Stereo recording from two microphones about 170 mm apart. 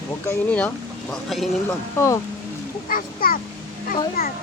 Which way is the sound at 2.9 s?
55° left (ahead or behind).